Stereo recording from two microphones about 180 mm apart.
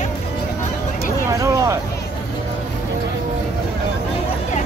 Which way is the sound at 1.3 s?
15° right (ahead or behind).